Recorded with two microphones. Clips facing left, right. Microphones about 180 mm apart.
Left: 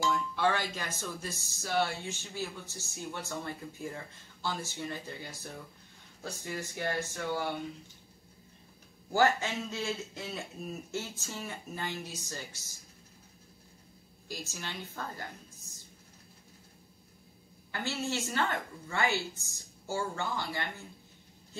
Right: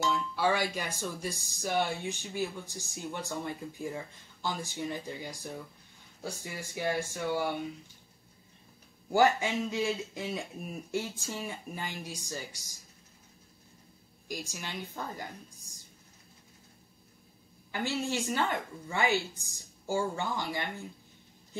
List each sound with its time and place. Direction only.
0.0 s speech: 5° right (ahead or behind)
9.1 s speech: 15° right (ahead or behind)
14.2 s speech: 15° right (ahead or behind)
17.6 s speech: 15° right (ahead or behind)